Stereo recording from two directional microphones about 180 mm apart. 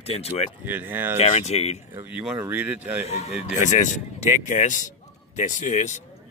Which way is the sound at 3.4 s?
40° left (ahead or behind).